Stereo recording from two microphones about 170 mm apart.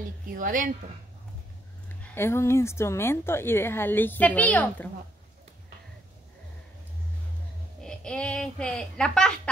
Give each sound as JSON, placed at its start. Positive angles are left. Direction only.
{"t": 0.3, "sound": "a woman's voice", "side_deg": -50}
{"t": 2.1, "sound": "a woman's voice", "side_deg": 15}
{"t": 7.8, "sound": "speech", "side_deg": 5}